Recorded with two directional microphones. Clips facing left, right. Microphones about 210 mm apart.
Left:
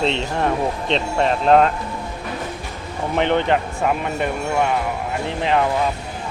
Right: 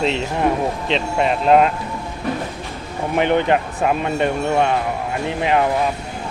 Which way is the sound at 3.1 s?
15° right (ahead or behind).